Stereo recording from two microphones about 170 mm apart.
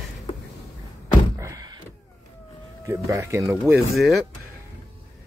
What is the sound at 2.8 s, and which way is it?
Cat, 20° right (ahead or behind).